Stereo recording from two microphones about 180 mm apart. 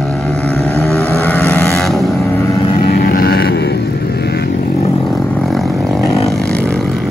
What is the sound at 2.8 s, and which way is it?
Vehicle, 60° left (ahead or behind).